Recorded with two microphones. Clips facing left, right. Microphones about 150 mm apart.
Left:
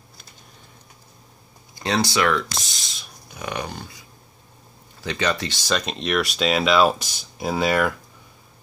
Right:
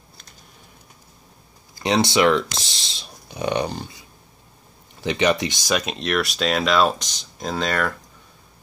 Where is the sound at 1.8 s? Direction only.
20° right (ahead or behind).